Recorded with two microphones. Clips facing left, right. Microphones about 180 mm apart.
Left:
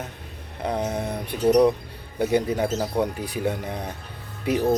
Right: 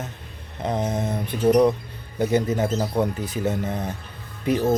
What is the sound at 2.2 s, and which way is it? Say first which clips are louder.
Speech: right 1 dB; 10° left (ahead or behind).